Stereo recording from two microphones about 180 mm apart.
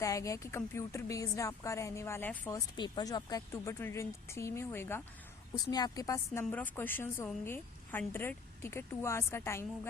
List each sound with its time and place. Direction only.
0.0 s speech: 15° left (ahead or behind)